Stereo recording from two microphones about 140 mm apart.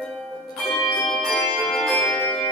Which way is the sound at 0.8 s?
25° left (ahead or behind).